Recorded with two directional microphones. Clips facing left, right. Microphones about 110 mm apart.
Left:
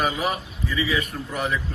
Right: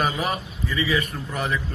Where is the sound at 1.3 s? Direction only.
5° left (ahead or behind).